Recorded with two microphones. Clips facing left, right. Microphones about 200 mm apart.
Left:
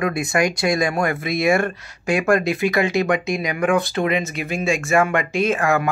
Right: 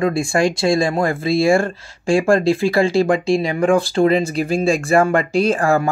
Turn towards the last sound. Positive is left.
turn(degrees=-30)  # may be behind; listen again after turning